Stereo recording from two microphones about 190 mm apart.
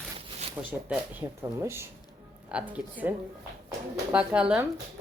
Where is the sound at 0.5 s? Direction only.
10° right (ahead or behind).